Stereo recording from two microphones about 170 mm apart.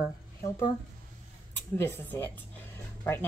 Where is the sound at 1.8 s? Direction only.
10° left (ahead or behind).